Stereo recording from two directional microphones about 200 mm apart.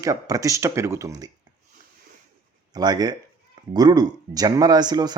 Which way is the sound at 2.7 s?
20° right (ahead or behind).